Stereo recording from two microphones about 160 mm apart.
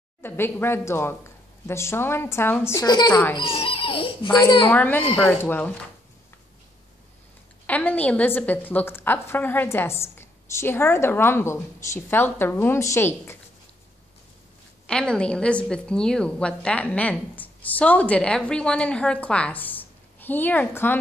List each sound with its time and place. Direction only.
0.2 s a woman's voice: 15° left (ahead or behind); by 4.4 s 35° left (ahead or behind)
4.6 s a woman's voice: 10° left (ahead or behind)
7.6 s a woman's voice: 10° left (ahead or behind)
14.9 s a woman's voice: 5° left (ahead or behind)